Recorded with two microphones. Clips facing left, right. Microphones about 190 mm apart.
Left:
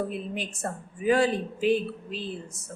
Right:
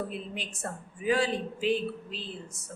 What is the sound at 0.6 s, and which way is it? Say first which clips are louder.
A woman's voice: left 4 dB; 45° left (ahead or behind).